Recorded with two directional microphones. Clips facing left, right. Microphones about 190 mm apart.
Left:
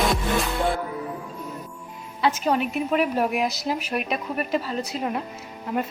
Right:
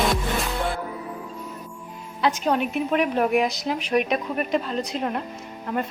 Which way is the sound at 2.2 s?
5° left (ahead or behind).